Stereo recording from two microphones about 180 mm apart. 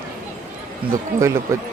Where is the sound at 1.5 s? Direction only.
15° right (ahead or behind).